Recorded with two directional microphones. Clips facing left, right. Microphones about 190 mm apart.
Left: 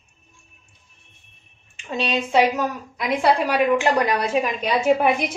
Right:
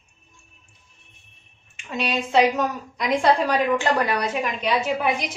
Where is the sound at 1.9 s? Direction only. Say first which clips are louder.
Left 2 dB; 30° left (ahead or behind).